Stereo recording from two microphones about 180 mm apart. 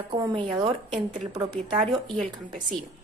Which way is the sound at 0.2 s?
25° right (ahead or behind).